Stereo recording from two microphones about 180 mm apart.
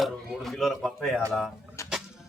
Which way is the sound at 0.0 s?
Centre (ahead or behind).